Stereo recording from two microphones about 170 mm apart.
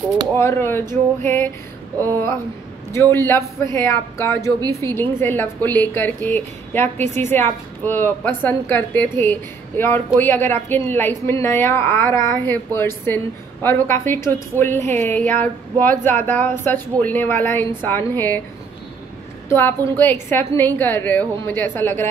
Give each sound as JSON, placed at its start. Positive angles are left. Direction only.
{"t": 0.4, "sound": "a woman's voice", "side_deg": 15}
{"t": 2.9, "sound": "a woman's voice", "side_deg": 15}
{"t": 19.5, "sound": "a woman's voice", "side_deg": 15}